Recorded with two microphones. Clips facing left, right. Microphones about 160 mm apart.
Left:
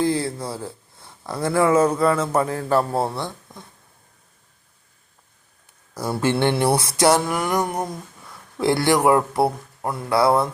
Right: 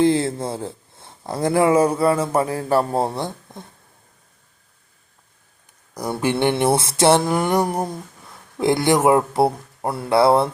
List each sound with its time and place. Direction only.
0.0 s speech: 25° right (ahead or behind)
5.9 s speech: 15° right (ahead or behind)